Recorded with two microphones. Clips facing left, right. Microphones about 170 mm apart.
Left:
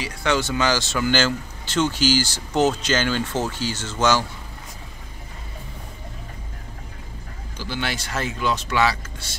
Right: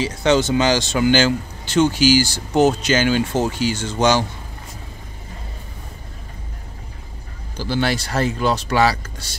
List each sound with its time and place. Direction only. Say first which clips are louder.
0.0 s speech: right 6 dB; 20° right (ahead or behind)
7.5 s speech: right 8 dB; 35° right (ahead or behind)